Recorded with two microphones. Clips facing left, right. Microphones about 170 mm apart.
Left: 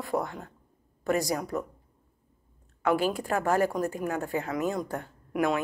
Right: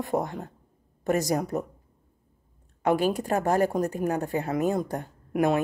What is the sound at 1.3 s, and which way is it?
Speech, 40° right (ahead or behind).